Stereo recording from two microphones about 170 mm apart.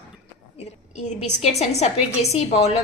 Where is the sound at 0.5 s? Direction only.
40° left (ahead or behind).